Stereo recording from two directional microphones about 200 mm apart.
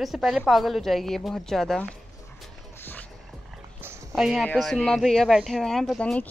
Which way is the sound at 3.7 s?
5° right (ahead or behind).